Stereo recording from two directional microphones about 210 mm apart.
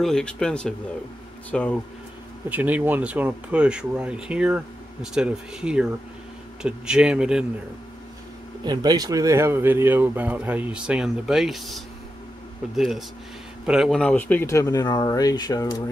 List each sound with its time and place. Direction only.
0.0 s speech: 5° left (ahead or behind)
2.5 s speech: 5° right (ahead or behind)
8.6 s speech: 20° right (ahead or behind); by 15.8 s 20° left (ahead or behind)